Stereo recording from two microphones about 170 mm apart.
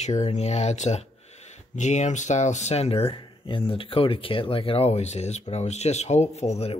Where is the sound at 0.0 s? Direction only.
45° left (ahead or behind).